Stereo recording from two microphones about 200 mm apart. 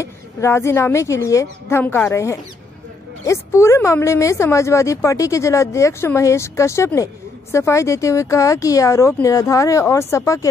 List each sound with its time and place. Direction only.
0.0 s a woman's voice: 15° left (ahead or behind)